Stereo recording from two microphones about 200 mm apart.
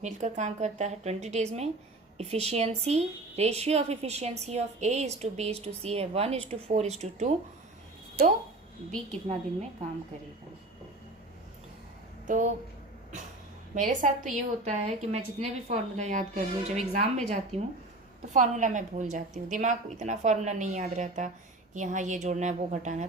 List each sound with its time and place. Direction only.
0.0 s a woman's voice: 35° right (ahead or behind)
9.3 s a woman's voice: 35° right (ahead or behind)
13.7 s a woman's voice: 40° right (ahead or behind)